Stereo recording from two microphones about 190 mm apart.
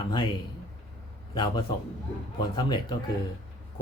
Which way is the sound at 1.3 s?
25° left (ahead or behind).